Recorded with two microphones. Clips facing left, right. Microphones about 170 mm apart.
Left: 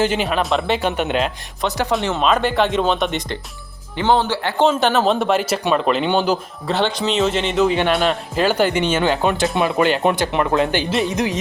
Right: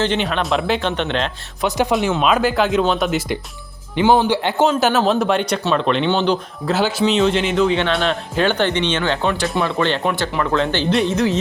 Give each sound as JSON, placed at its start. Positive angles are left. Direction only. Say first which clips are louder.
{"t": 0.0, "sound": "speech", "louder": "left 1 dB", "side_deg": 5}
{"t": 1.6, "sound": "speech", "louder": "right 2 dB", "side_deg": -15}
{"t": 2.1, "sound": "speech", "louder": "left 2 dB", "side_deg": -5}